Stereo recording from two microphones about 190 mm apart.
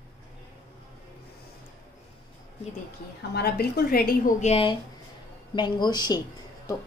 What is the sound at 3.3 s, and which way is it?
A woman's voice, 55° left (ahead or behind).